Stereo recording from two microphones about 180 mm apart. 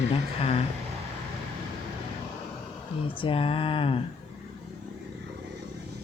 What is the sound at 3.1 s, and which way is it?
Speech, 30° left (ahead or behind).